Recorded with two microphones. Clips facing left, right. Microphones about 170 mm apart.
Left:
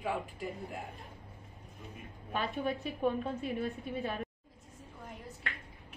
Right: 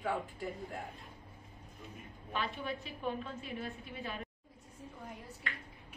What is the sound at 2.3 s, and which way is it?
A woman's voice, 45° left (ahead or behind).